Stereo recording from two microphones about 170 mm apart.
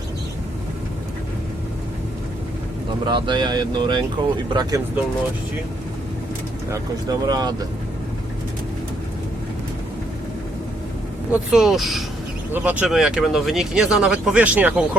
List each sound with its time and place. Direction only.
3.1 s speech: 25° right (ahead or behind)
6.7 s speech: 20° right (ahead or behind)
11.3 s speech: centre (ahead or behind)